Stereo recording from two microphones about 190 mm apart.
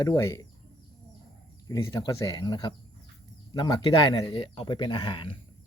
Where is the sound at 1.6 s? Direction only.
20° left (ahead or behind).